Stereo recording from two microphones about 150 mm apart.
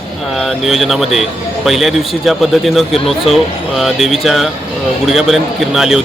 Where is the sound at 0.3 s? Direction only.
Centre (ahead or behind).